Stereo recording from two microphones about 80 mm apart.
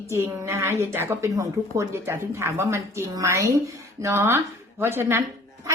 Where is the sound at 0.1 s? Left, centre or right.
Right.